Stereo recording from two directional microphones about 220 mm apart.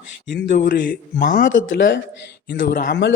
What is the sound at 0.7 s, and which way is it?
Speech, 40° left (ahead or behind).